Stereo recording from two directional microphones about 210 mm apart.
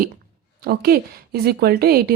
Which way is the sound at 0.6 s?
50° right (ahead or behind).